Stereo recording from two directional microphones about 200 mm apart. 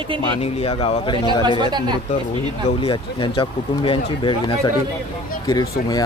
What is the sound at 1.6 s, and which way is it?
Speech, 20° right (ahead or behind).